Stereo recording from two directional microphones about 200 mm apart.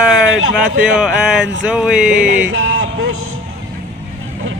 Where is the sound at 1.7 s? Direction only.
5° right (ahead or behind).